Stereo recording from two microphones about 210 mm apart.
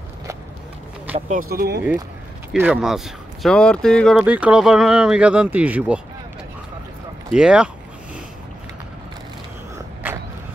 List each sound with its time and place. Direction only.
1.1 s speech: 40° right (ahead or behind)
2.6 s speech: centre (ahead or behind)
7.3 s speech: 5° right (ahead or behind)